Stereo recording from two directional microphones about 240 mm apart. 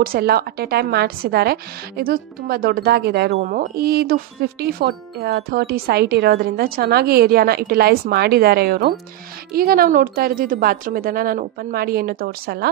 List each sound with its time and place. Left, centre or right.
0.0 s speech: right
3.3 s speech: right